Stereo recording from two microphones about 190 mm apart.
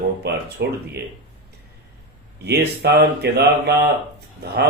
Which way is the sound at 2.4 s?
60° right (ahead or behind).